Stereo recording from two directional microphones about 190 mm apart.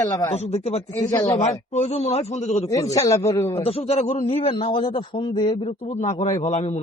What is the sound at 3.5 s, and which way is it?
A man's voice, 30° left (ahead or behind).